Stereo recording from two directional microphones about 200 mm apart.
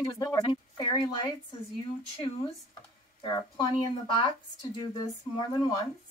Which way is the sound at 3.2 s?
25° left (ahead or behind).